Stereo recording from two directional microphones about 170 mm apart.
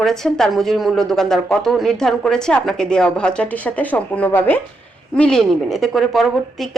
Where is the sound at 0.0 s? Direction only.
Centre (ahead or behind).